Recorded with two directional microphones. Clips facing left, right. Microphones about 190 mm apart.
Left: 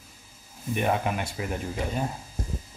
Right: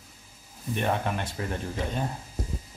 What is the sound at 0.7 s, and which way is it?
Speech, 10° left (ahead or behind).